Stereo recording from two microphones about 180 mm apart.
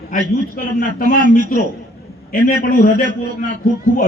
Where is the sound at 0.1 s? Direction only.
50° left (ahead or behind).